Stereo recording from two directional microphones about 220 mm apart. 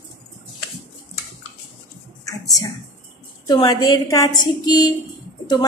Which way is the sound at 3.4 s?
20° left (ahead or behind).